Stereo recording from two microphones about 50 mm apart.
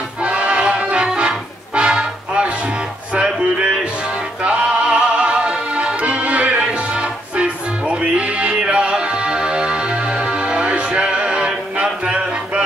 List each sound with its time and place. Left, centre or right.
0.2 s music: right
4.4 s music: right